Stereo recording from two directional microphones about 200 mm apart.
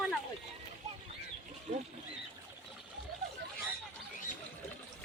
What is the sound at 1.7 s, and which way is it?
Speech, 45° right (ahead or behind).